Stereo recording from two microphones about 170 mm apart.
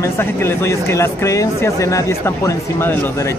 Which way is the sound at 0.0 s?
15° left (ahead or behind).